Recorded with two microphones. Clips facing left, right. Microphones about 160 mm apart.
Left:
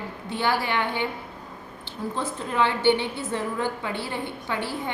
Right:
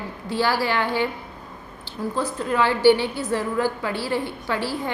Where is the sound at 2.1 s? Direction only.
25° left (ahead or behind).